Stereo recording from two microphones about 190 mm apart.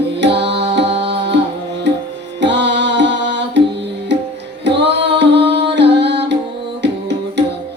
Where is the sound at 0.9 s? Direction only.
65° right (ahead or behind).